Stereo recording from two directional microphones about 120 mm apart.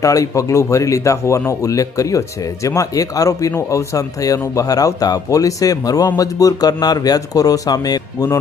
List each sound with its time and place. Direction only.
0.0 s a man's voice: 25° left (ahead or behind)